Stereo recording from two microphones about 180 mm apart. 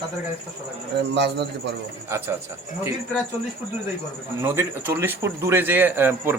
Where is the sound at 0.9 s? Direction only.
70° right (ahead or behind).